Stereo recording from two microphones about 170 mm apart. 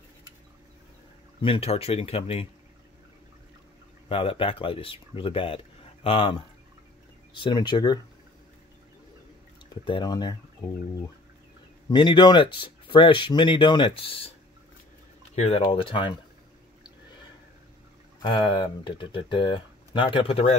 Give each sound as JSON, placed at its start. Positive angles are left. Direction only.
{"t": 1.4, "sound": "speech", "side_deg": 35}
{"t": 4.1, "sound": "speech", "side_deg": 30}
{"t": 9.8, "sound": "speech", "side_deg": 25}
{"t": 11.9, "sound": "speech", "side_deg": 30}
{"t": 15.3, "sound": "speech", "side_deg": 35}
{"t": 18.2, "sound": "speech", "side_deg": 25}